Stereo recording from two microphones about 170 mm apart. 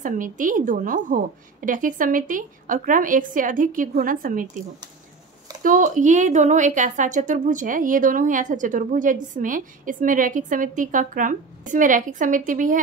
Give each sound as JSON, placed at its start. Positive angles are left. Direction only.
{"t": 0.0, "sound": "speech", "side_deg": -50}